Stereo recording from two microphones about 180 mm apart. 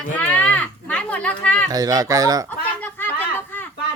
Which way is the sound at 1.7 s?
20° right (ahead or behind).